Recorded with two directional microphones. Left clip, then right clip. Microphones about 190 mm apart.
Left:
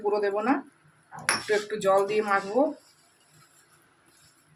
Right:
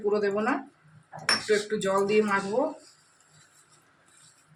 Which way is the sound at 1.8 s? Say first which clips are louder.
Left 3 dB; 25° left (ahead or behind).